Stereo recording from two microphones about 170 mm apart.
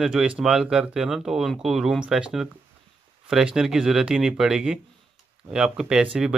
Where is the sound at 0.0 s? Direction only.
5° right (ahead or behind).